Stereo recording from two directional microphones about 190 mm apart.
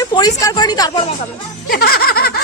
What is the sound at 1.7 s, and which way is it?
Music, 50° left (ahead or behind).